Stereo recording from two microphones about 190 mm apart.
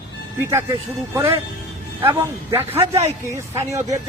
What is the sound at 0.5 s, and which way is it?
Speech, 10° right (ahead or behind).